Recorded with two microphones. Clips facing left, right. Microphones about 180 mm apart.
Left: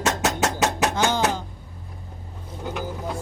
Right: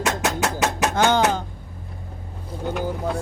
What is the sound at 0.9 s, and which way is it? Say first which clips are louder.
Music: right 4 dB; 60° right (ahead or behind).